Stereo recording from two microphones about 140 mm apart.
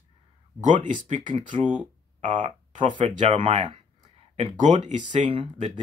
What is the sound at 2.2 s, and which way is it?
Speech, 35° right (ahead or behind).